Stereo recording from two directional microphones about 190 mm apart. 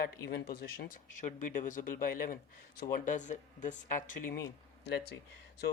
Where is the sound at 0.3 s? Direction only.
55° left (ahead or behind).